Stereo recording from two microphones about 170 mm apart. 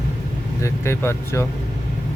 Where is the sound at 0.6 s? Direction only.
15° left (ahead or behind).